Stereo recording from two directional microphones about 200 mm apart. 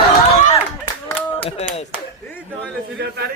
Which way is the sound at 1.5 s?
30° left (ahead or behind).